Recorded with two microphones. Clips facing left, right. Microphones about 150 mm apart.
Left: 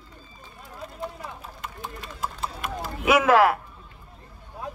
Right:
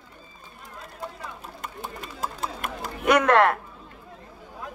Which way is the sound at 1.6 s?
45° right (ahead or behind).